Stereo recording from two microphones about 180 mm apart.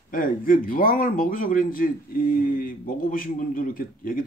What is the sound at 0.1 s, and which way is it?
A man's voice, 50° left (ahead or behind).